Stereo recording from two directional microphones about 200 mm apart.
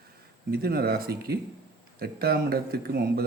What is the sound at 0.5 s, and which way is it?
A man's voice, 50° right (ahead or behind).